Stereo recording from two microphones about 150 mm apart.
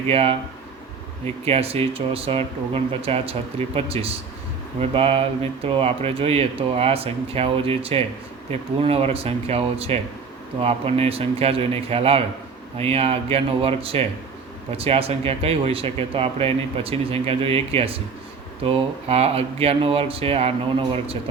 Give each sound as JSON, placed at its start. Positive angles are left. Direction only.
{"t": 0.1, "sound": "speech", "side_deg": -40}